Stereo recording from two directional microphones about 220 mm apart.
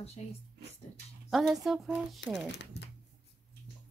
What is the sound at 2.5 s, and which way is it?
Speech, 50° left (ahead or behind).